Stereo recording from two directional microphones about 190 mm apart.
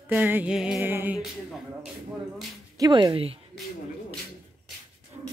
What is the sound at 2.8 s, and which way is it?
Speech, 20° right (ahead or behind).